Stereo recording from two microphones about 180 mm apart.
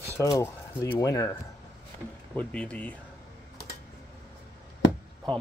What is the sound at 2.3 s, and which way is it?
Speech, 5° left (ahead or behind).